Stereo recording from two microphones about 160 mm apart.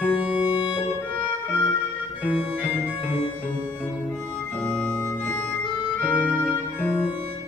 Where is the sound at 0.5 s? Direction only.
30° left (ahead or behind).